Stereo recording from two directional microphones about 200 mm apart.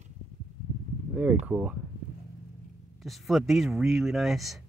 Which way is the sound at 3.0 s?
Centre (ahead or behind).